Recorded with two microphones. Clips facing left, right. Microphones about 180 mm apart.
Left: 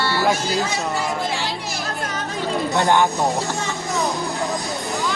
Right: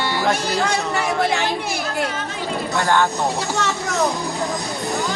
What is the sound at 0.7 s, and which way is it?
Speech, 70° right (ahead or behind).